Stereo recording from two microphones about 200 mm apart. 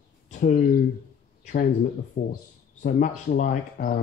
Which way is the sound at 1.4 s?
40° left (ahead or behind).